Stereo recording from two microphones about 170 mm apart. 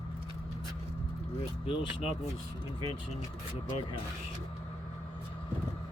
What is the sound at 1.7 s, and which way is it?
Speech, 30° left (ahead or behind).